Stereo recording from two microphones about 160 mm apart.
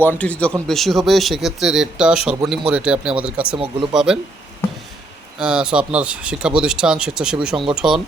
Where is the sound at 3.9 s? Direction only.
5° right (ahead or behind).